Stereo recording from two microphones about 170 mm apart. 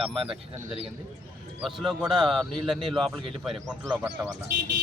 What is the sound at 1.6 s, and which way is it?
Speech, centre (ahead or behind).